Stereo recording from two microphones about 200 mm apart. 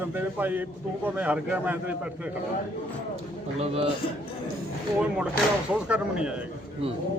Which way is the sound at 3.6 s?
30° right (ahead or behind).